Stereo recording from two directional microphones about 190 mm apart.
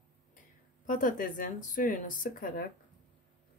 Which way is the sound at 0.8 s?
45° left (ahead or behind).